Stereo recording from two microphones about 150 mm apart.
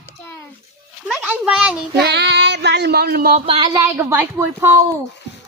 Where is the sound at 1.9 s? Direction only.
90° right.